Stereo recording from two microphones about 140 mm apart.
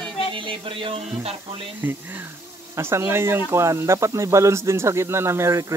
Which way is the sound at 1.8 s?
15° right (ahead or behind).